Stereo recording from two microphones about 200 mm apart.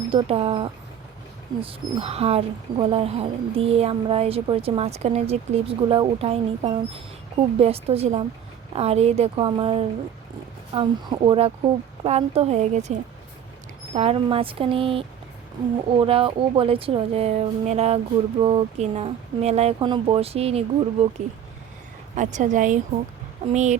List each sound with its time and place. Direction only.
0.1 s a woman's voice: 30° right (ahead or behind)
22.1 s a woman's voice: 40° right (ahead or behind)